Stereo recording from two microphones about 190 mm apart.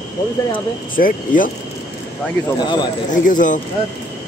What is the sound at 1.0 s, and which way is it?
Speech, 45° left (ahead or behind).